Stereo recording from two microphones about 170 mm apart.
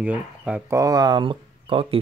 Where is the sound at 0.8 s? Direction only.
20° right (ahead or behind).